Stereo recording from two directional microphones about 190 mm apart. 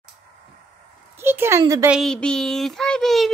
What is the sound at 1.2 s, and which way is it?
Speech, 10° right (ahead or behind).